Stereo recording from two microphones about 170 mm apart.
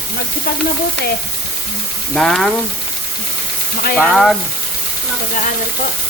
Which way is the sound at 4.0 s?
Centre (ahead or behind).